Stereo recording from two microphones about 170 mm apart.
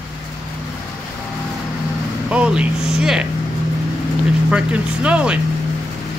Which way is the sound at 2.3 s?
5° right (ahead or behind).